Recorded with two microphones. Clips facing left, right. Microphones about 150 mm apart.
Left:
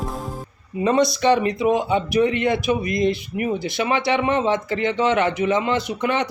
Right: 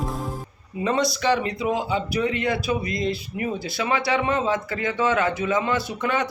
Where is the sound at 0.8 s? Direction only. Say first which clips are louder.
Left 5 dB; 20° left (ahead or behind).